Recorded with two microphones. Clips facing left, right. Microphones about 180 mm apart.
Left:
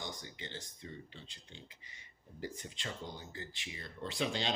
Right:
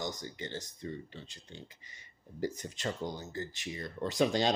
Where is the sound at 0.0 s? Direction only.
45° right (ahead or behind).